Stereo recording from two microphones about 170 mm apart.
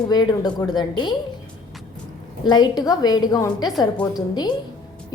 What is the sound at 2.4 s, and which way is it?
A woman's voice, 25° left (ahead or behind).